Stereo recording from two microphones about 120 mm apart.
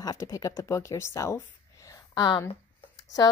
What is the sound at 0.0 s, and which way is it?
A woman's voice, 30° left (ahead or behind).